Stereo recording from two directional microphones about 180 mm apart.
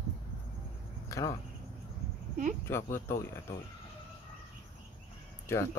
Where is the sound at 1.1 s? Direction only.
20° left (ahead or behind).